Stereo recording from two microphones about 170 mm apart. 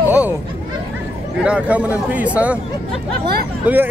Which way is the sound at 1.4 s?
5° right (ahead or behind).